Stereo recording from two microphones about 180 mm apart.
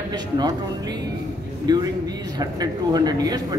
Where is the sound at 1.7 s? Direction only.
20° right (ahead or behind).